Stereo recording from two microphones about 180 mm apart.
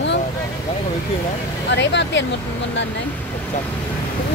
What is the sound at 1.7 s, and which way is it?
Speech, 80° left.